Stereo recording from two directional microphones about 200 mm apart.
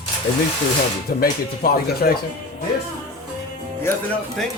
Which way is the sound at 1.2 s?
50° left (ahead or behind).